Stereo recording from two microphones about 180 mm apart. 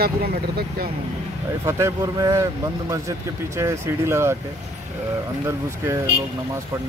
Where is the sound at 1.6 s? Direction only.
20° right (ahead or behind).